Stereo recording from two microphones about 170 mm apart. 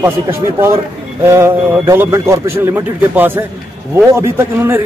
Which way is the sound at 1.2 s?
15° right (ahead or behind).